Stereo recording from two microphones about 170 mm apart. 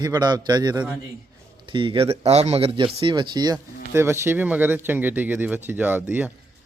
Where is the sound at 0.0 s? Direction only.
25° right (ahead or behind).